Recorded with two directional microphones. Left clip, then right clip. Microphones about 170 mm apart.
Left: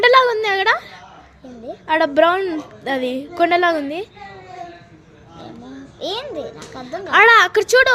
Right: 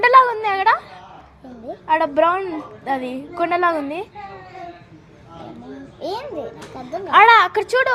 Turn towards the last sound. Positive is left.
turn(degrees=40)  # may be behind; listen again after turning